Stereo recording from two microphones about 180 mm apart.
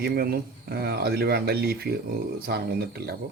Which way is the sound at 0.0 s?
60° right (ahead or behind).